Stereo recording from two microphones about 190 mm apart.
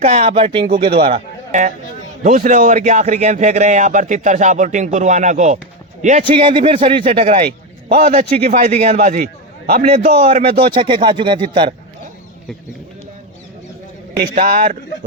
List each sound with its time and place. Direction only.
0.0 s speech: 35° right (ahead or behind)
1.1 s a man's voice: 40° right (ahead or behind)
6.2 s speech: 25° right (ahead or behind)
7.3 s a man's voice: 55° right (ahead or behind)
10.2 s speech: 30° right (ahead or behind)
14.3 s speech: 50° right (ahead or behind)